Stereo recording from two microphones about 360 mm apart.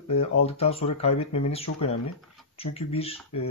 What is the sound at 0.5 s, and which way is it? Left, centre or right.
Speech, centre.